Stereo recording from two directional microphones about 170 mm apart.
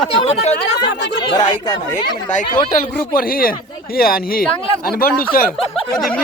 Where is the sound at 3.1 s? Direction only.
60° left (ahead or behind).